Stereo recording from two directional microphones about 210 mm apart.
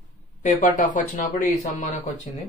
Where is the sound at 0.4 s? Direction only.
35° left (ahead or behind).